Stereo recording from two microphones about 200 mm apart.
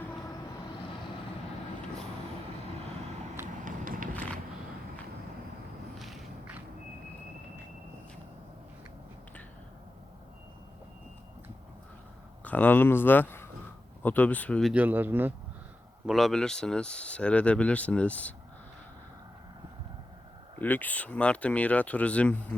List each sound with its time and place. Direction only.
3.4 s run: 40° right (ahead or behind)
6.0 s walk: centre (ahead or behind)
12.5 s speech: 10° left (ahead or behind)
14.7 s speech: 10° right (ahead or behind)
20.6 s speech: 10° left (ahead or behind)